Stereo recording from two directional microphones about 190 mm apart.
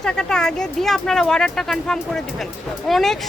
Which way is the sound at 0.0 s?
5° left (ahead or behind).